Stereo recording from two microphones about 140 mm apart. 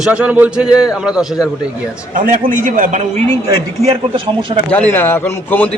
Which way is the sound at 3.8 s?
45° right (ahead or behind).